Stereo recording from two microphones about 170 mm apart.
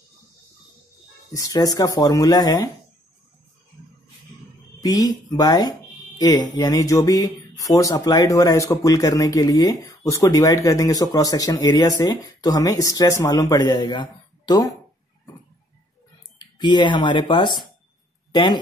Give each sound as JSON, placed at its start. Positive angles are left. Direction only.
{"t": 1.3, "sound": "speech", "side_deg": 20}
{"t": 4.7, "sound": "speech", "side_deg": 20}
{"t": 16.3, "sound": "speech", "side_deg": 25}